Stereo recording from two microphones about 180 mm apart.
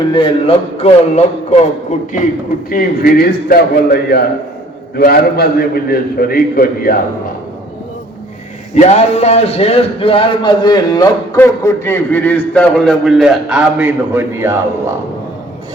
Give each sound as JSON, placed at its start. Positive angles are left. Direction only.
{"t": 0.1, "sound": "a man's voice", "side_deg": 30}
{"t": 2.6, "sound": "a man's voice", "side_deg": 55}
{"t": 8.7, "sound": "a man's voice", "side_deg": 35}